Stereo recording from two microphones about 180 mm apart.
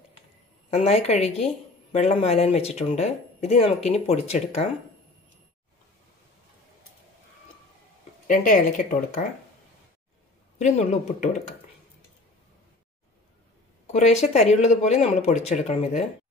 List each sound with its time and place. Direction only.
0.7 s speech: 35° left (ahead or behind)
8.3 s speech: 45° left (ahead or behind)
10.6 s speech: 40° left (ahead or behind)
13.9 s speech: 40° left (ahead or behind)